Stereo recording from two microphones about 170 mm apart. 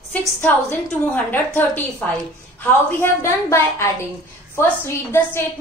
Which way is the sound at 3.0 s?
15° left (ahead or behind).